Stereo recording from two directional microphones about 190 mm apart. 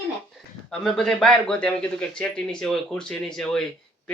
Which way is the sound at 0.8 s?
5° left (ahead or behind).